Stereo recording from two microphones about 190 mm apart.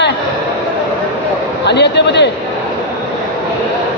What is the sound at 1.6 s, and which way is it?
Speech, 65° left (ahead or behind).